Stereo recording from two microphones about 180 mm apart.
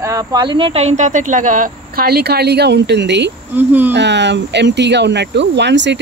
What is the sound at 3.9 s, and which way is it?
Speech, 75° right (ahead or behind).